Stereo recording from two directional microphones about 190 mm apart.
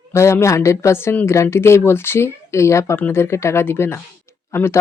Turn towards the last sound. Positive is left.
turn(degrees=15)  # may be behind; listen again after turning